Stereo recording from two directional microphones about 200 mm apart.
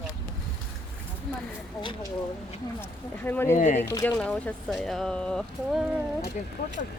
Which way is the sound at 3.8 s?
10° left (ahead or behind).